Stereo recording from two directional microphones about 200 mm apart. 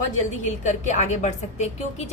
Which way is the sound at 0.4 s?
35° left (ahead or behind).